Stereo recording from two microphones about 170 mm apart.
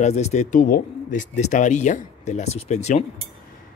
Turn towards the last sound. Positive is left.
turn(degrees=40)  # may be behind; listen again after turning